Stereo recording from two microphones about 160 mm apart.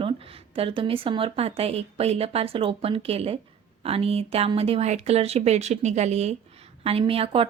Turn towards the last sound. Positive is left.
turn(degrees=-35)  # may be behind; listen again after turning